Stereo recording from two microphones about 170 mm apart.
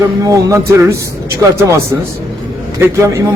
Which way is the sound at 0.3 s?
15° right (ahead or behind).